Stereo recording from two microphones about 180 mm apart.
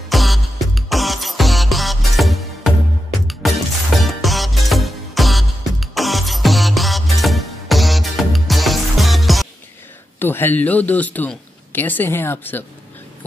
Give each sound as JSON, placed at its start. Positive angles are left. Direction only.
{"t": 0.1, "sound": "music", "side_deg": 0}
{"t": 10.1, "sound": "speech", "side_deg": 10}